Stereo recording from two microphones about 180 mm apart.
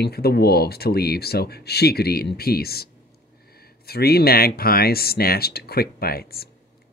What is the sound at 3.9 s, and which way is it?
Speech, 60° left (ahead or behind).